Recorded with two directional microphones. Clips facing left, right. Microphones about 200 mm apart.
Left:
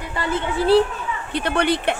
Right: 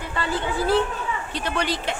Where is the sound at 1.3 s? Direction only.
60° left (ahead or behind).